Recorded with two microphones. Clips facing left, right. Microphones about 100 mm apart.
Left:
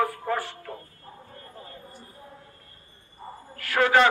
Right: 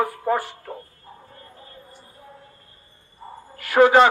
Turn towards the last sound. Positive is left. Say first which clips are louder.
# right 6 dB
turn(degrees=-20)  # may be behind; listen again after turning